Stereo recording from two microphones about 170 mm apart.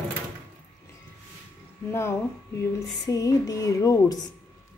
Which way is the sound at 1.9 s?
15° left (ahead or behind).